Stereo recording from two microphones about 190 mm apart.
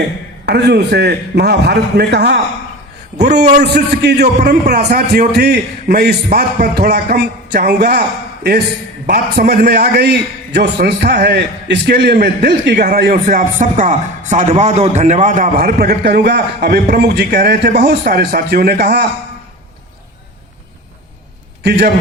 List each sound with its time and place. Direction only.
0.4 s a man's voice: 60° right (ahead or behind)
3.6 s a man's voice: 60° right (ahead or behind)
9.0 s a man's voice: 55° right (ahead or behind)
21.6 s a man's voice: 60° right (ahead or behind)